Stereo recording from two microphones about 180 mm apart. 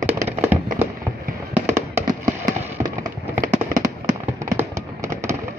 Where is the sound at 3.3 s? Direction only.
20° right (ahead or behind).